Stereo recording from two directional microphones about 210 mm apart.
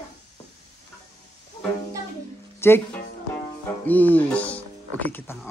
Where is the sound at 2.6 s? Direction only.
10° left (ahead or behind).